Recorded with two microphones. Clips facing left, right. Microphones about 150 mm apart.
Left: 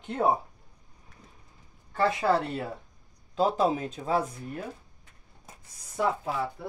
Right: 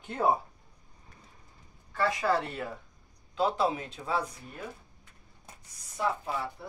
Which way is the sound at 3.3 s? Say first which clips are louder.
Left 3 dB; 40° left (ahead or behind).